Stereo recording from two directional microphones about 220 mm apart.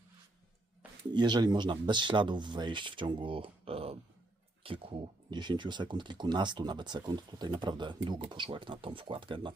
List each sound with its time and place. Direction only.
1.1 s speech: 20° right (ahead or behind)